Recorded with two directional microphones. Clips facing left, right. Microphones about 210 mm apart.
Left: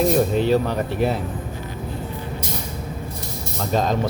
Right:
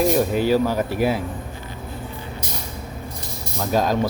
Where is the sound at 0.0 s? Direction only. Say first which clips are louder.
Even; 5° right (ahead or behind).